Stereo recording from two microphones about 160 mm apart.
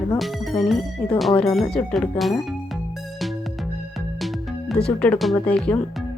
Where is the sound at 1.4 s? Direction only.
5° left (ahead or behind).